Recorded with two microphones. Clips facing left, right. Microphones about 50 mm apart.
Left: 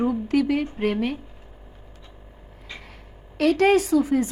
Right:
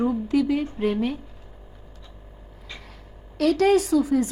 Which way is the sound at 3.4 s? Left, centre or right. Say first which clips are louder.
Left 1 dB; left.